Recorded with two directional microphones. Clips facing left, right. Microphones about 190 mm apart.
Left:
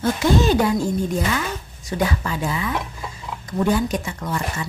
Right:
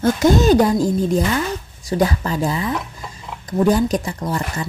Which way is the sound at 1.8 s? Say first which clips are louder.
Right 4 dB; 35° right (ahead or behind).